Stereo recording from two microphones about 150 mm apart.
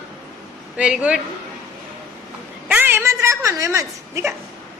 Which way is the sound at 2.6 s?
10° right (ahead or behind).